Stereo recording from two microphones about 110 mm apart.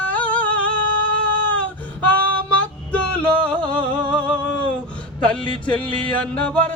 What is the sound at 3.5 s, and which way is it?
Music, 50° right (ahead or behind).